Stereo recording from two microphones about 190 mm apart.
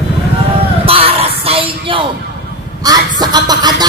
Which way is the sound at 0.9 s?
30° right (ahead or behind).